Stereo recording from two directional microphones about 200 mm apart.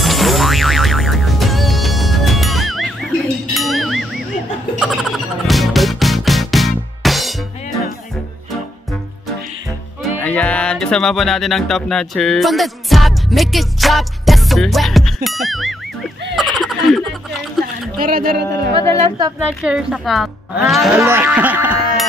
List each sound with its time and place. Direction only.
0.0 s music: centre (ahead or behind)
10.0 s music: 5° left (ahead or behind)
16.3 s a sound: centre (ahead or behind)
17.9 s speech: 45° right (ahead or behind)
19.0 s a woman's voice: 20° right (ahead or behind)
19.4 s cattle: 5° right (ahead or behind)